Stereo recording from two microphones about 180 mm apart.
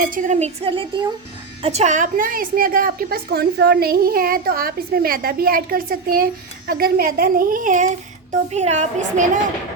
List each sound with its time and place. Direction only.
0.0 s a woman's voice: 50° right (ahead or behind)